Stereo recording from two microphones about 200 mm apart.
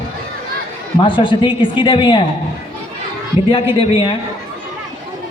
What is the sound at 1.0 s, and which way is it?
A man's voice, 25° left (ahead or behind).